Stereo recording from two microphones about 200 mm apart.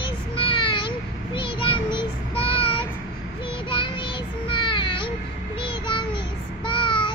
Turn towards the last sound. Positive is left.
turn(degrees=25)  # may be behind; listen again after turning